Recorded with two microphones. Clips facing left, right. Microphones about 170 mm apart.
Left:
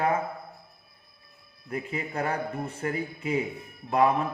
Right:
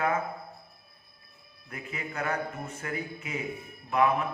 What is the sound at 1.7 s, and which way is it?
A man's voice, 30° left (ahead or behind).